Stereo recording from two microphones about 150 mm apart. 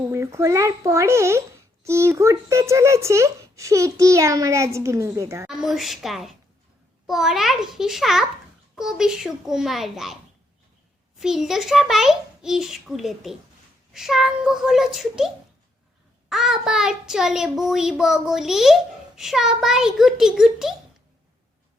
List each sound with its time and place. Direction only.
0.1 s a child's voice: 15° right (ahead or behind)
5.5 s a child's voice: centre (ahead or behind)
11.2 s a child's voice: 5° right (ahead or behind)
16.3 s a child's voice: centre (ahead or behind)